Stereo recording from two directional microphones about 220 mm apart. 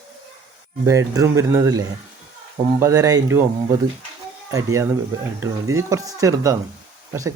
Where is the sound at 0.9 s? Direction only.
15° right (ahead or behind).